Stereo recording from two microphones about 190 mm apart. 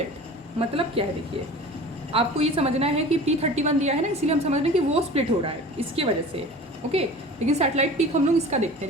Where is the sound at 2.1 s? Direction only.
30° right (ahead or behind).